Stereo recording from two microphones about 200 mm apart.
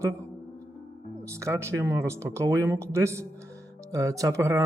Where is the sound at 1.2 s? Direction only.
15° right (ahead or behind).